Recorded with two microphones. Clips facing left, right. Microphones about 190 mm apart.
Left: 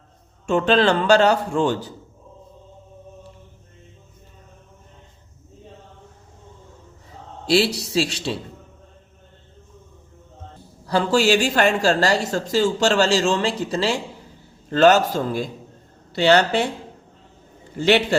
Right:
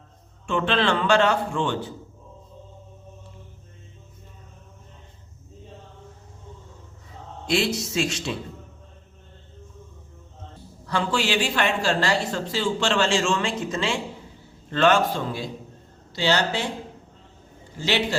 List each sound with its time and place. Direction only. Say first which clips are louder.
0.4 s speech: left 6 dB; 40° left (ahead or behind)
7.4 s speech: left 5 dB; 35° left (ahead or behind)
10.8 s speech: left 7 dB; 40° left (ahead or behind)
16.1 s speech: left 7 dB; 60° left (ahead or behind)
17.7 s speech: left 8 dB; 60° left (ahead or behind)